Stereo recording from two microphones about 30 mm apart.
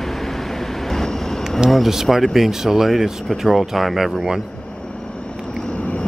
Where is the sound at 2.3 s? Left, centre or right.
Centre.